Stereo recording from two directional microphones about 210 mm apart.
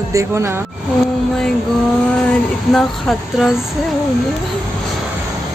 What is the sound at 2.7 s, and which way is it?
Speech, centre (ahead or behind).